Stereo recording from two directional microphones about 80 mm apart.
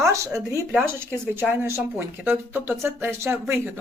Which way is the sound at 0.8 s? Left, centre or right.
Right.